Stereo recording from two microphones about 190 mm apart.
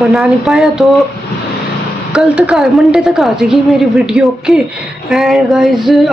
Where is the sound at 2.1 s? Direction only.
5° right (ahead or behind).